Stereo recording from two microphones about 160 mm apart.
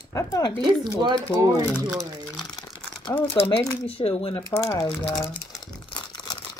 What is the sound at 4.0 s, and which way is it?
Speech, 30° left (ahead or behind).